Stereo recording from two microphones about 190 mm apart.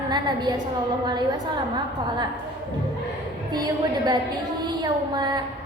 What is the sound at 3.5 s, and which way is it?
A woman's voice, 20° right (ahead or behind).